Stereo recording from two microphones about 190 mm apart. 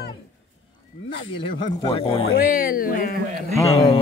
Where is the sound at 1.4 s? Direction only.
25° left (ahead or behind).